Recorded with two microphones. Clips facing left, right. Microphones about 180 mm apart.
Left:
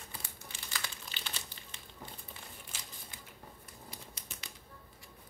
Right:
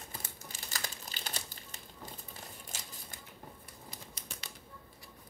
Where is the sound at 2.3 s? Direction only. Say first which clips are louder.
Right 2 dB; 45° right (ahead or behind).